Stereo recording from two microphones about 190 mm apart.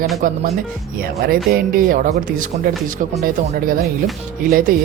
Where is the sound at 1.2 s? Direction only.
50° right (ahead or behind).